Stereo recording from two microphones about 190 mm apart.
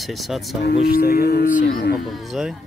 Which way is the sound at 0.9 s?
50° left (ahead or behind).